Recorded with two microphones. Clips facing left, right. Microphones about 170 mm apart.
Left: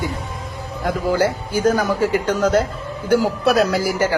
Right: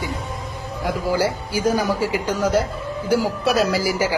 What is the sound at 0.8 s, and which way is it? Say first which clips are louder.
A man's voice: left 2 dB; 10° right (ahead or behind).